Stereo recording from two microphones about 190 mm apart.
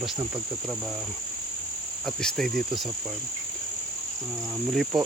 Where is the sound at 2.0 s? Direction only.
Centre (ahead or behind).